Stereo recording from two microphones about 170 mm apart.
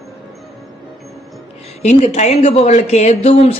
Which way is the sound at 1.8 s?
40° left (ahead or behind).